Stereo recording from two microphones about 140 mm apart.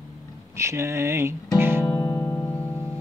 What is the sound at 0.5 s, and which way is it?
Music, 20° right (ahead or behind).